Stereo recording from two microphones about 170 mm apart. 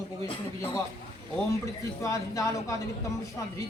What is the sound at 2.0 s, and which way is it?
Speech, 20° left (ahead or behind).